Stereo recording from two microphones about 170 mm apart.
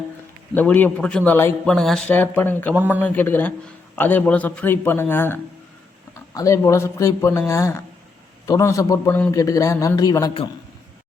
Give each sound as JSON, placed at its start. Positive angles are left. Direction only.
{"t": 0.5, "sound": "speech", "side_deg": 10}
{"t": 2.7, "sound": "speech", "side_deg": -10}
{"t": 3.0, "sound": "a man's voice", "side_deg": 10}